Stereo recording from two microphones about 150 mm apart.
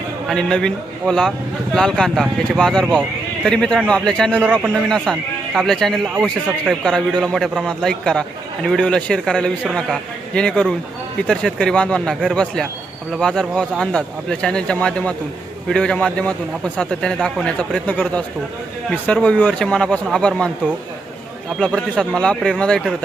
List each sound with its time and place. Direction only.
0.3 s a man's voice: 5° left (ahead or behind)
21.6 s a man's voice: 5° left (ahead or behind)